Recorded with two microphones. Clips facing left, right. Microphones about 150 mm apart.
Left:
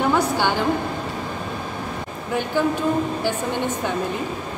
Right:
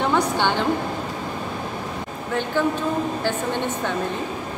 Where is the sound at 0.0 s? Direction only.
5° left (ahead or behind).